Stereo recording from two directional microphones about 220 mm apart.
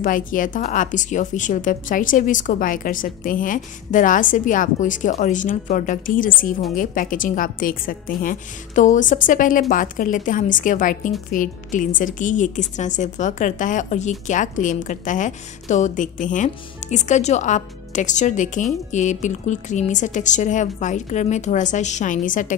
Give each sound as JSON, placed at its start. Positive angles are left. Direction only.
{"t": 0.0, "sound": "a woman's voice", "side_deg": 40}